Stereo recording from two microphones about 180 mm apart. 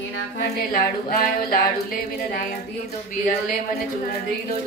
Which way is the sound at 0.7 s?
55° left (ahead or behind).